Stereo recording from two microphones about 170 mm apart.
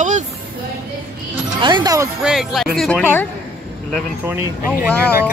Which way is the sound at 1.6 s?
25° right (ahead or behind).